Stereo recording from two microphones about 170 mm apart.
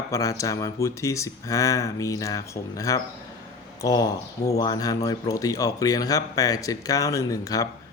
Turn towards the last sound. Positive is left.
turn(degrees=20)  # may be behind; listen again after turning